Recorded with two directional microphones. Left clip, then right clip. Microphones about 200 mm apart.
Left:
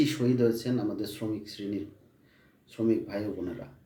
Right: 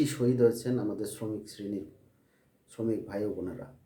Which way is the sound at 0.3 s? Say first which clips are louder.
Right 1 dB; 15° right (ahead or behind).